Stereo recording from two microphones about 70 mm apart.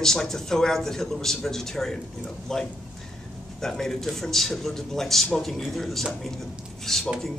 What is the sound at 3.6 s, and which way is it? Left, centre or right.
A man's voice, centre.